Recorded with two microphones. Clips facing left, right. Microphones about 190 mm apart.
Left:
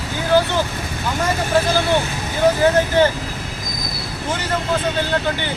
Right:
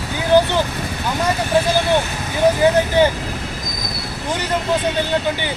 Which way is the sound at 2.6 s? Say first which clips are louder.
Right 1 dB; 15° right (ahead or behind).